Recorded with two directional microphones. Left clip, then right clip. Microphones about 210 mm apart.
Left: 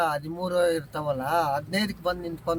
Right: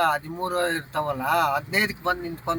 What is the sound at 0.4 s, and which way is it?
A man's voice, 55° left (ahead or behind).